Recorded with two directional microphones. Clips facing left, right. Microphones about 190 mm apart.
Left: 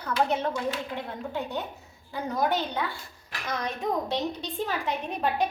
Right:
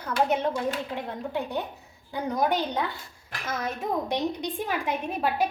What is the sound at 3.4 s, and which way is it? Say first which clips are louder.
A woman's voice: even; 5° right (ahead or behind).